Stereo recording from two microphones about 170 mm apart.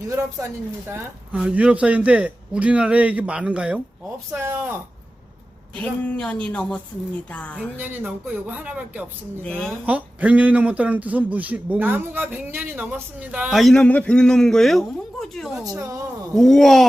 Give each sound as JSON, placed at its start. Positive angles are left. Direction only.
{"t": 0.1, "sound": "speech", "side_deg": -15}
{"t": 5.7, "sound": "a woman's voice", "side_deg": 10}
{"t": 7.8, "sound": "speech", "side_deg": -10}
{"t": 15.6, "sound": "speech", "side_deg": -20}
{"t": 16.3, "sound": "speech", "side_deg": 0}